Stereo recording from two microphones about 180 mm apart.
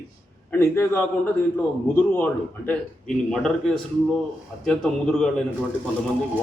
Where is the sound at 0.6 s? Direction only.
10° left (ahead or behind).